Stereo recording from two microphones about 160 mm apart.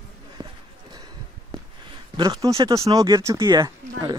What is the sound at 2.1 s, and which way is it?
Speech, 25° right (ahead or behind).